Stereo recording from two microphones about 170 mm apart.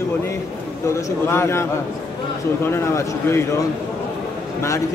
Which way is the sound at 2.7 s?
15° left (ahead or behind).